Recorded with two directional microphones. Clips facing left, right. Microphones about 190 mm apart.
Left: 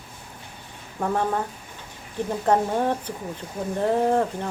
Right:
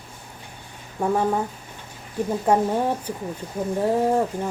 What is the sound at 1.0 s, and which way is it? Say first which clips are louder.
Speech: right 3 dB; 10° right (ahead or behind).